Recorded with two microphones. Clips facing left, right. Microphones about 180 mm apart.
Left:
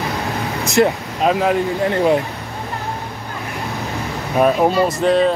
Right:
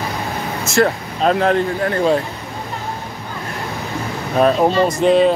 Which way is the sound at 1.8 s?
20° left (ahead or behind).